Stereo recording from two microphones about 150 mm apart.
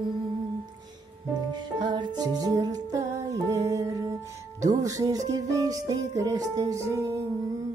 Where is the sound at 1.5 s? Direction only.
30° right (ahead or behind).